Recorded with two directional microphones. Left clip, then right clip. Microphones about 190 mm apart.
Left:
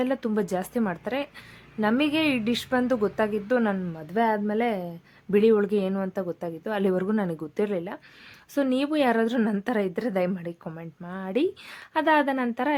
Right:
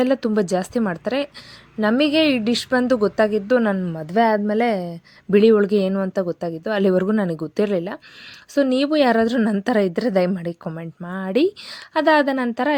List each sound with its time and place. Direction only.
0.0 s a woman's voice: 25° right (ahead or behind)